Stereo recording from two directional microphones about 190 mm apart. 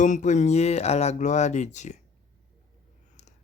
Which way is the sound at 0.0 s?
40° left (ahead or behind).